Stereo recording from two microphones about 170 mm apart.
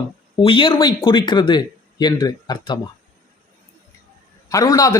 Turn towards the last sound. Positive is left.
turn(degrees=20)  # may be behind; listen again after turning